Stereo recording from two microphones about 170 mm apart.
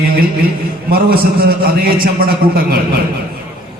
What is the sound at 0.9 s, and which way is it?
A man's voice, 60° right (ahead or behind).